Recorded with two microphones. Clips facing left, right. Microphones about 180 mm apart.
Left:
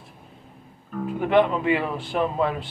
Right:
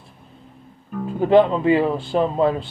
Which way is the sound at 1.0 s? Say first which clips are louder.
Right 5 dB; 30° right (ahead or behind).